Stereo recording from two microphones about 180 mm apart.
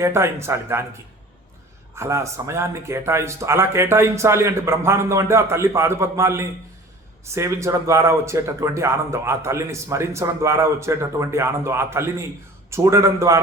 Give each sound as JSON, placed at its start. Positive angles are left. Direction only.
{"t": 0.0, "sound": "speech", "side_deg": -15}
{"t": 2.0, "sound": "speech", "side_deg": -15}